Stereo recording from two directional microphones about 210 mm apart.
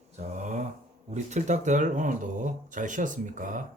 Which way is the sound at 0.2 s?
35° right (ahead or behind).